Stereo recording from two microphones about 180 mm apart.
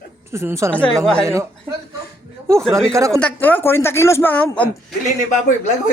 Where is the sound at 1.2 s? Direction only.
15° right (ahead or behind).